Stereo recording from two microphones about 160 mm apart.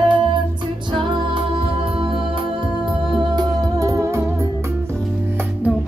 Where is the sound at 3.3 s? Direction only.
20° right (ahead or behind).